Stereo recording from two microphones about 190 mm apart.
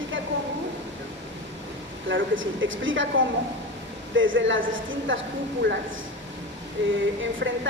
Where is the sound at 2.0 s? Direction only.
85° right.